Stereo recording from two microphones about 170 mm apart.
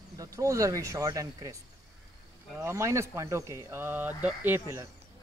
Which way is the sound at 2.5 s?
15° right (ahead or behind).